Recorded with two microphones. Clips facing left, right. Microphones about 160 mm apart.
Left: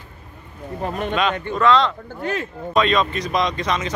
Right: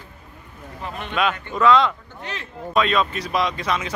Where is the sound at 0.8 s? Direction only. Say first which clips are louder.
Left 7 dB; 40° left (ahead or behind).